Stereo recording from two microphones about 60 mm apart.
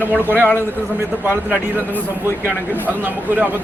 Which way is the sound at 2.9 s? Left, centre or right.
Right.